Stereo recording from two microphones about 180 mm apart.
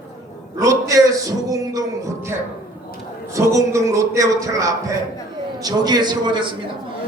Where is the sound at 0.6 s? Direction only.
20° right (ahead or behind).